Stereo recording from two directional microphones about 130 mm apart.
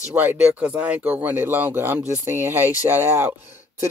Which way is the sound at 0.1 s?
15° right (ahead or behind).